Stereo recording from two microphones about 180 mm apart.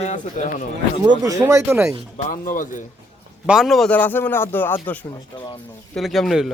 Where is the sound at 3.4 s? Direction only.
Centre (ahead or behind).